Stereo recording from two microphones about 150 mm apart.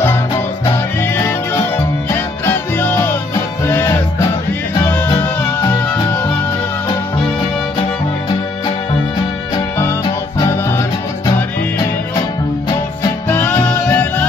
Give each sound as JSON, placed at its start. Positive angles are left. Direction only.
{"t": 1.0, "sound": "music", "side_deg": 15}
{"t": 5.2, "sound": "music", "side_deg": 10}
{"t": 13.3, "sound": "music", "side_deg": 10}